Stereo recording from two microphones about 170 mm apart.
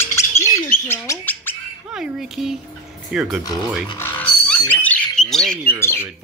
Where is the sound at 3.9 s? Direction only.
10° left (ahead or behind).